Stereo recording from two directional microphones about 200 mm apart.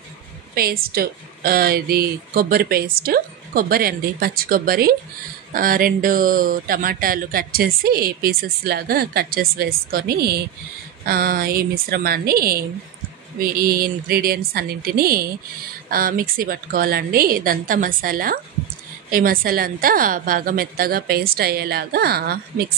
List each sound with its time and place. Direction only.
0.6 s speech: 50° right (ahead or behind)